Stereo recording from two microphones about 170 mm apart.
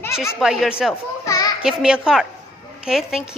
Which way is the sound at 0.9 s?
20° left (ahead or behind).